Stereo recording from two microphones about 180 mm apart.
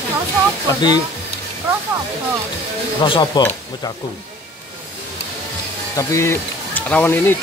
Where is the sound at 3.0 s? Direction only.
30° left (ahead or behind).